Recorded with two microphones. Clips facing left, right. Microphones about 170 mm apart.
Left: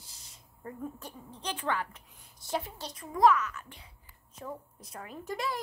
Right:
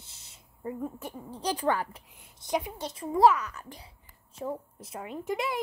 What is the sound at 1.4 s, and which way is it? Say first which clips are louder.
Speech: right 5 dB; 35° right (ahead or behind).